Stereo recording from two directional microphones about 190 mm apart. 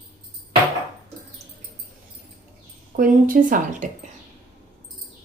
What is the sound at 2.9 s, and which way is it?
A woman's voice, 45° right (ahead or behind).